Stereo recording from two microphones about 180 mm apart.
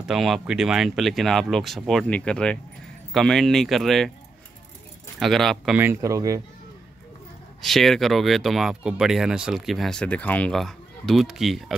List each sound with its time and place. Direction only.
0.0 s speech: centre (ahead or behind)
5.2 s speech: centre (ahead or behind)
5.8 s speech: 15° right (ahead or behind)
7.6 s speech: centre (ahead or behind)